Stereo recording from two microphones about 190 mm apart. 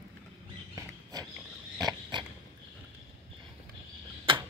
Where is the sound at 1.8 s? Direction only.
20° right (ahead or behind).